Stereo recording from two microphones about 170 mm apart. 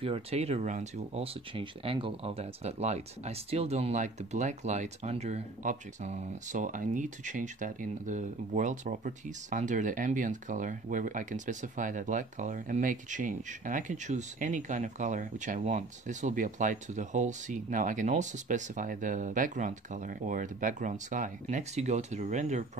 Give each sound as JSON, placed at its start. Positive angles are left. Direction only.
{"t": 0.0, "sound": "speech", "side_deg": -35}